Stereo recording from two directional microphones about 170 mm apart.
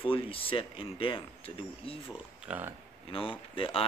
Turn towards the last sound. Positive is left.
turn(degrees=30)  # may be behind; listen again after turning